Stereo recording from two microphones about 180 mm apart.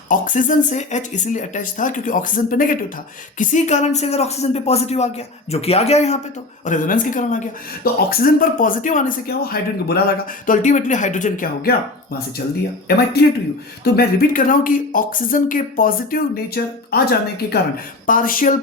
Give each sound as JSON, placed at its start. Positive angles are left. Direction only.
{"t": 0.1, "sound": "a man's voice", "side_deg": 45}
{"t": 13.2, "sound": "speech", "side_deg": 65}
{"t": 18.0, "sound": "speech", "side_deg": 50}